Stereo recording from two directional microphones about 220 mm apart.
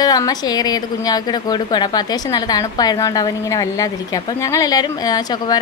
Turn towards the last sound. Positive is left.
turn(degrees=15)  # may be behind; listen again after turning